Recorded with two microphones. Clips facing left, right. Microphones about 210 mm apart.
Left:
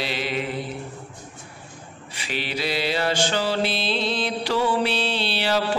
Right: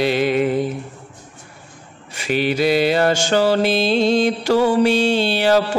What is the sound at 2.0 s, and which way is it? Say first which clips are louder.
Mantra: right 11 dB; 45° right (ahead or behind).